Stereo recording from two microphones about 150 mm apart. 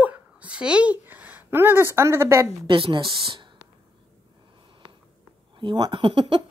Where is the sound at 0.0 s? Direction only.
10° right (ahead or behind).